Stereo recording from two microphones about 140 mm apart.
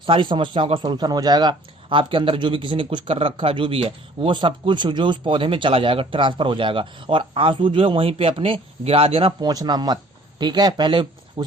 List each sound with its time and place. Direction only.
0.0 s speech: 35° right (ahead or behind)
9.4 s speech: 30° right (ahead or behind)